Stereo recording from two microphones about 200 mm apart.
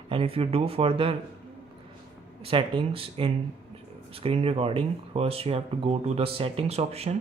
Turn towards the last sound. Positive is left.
turn(degrees=-30)  # may be behind; listen again after turning